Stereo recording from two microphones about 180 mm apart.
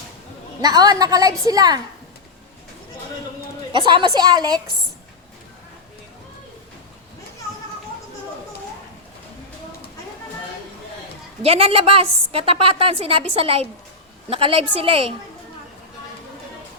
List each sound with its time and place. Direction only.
0.6 s a woman's voice: 20° right (ahead or behind)
3.7 s a woman's voice: 25° right (ahead or behind)
11.4 s a woman's voice: 30° right (ahead or behind)